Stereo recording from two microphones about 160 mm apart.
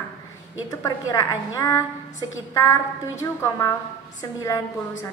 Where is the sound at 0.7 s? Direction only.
25° left (ahead or behind).